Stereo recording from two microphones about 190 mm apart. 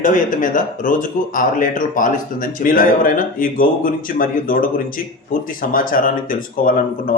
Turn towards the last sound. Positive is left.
turn(degrees=45)  # may be behind; listen again after turning